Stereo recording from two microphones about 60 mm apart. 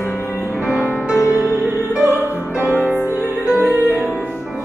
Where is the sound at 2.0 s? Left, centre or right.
Right.